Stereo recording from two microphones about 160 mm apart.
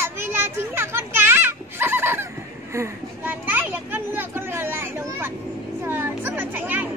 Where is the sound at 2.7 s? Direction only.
15° right (ahead or behind).